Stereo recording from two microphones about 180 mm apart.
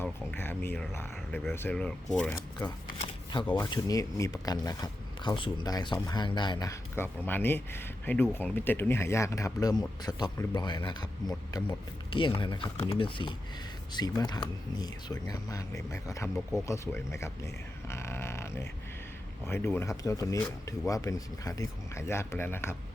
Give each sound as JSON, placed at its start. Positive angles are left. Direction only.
{"t": 0.0, "sound": "speech", "side_deg": 10}
{"t": 3.5, "sound": "speech", "side_deg": 20}